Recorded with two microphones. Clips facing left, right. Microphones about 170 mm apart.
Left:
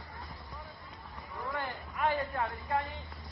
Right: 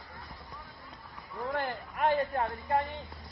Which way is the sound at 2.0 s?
40° right (ahead or behind).